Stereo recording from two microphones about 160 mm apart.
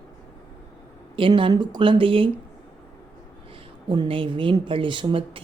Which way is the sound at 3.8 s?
30° right (ahead or behind).